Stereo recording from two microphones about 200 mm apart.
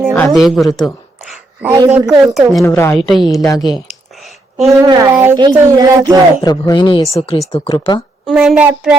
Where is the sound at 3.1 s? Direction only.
Centre (ahead or behind).